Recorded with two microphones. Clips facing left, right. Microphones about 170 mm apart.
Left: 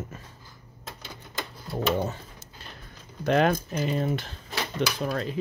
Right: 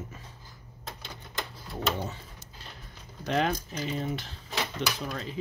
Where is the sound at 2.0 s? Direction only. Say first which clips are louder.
Left 6 dB; 50° left (ahead or behind).